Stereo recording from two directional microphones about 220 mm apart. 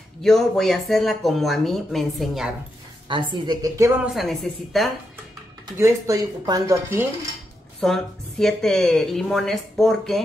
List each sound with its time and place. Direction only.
0.2 s a woman's voice: centre (ahead or behind)
3.1 s speech: 20° right (ahead or behind)
4.1 s a woman's voice: centre (ahead or behind)
5.8 s speech: 15° right (ahead or behind)
7.8 s a woman's voice: centre (ahead or behind)